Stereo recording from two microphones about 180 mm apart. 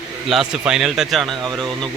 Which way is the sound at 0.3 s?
Centre (ahead or behind).